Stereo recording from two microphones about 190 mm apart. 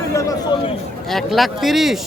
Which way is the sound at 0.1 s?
15° left (ahead or behind).